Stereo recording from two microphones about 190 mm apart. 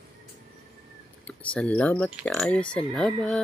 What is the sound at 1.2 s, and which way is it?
Speech, 5° left (ahead or behind).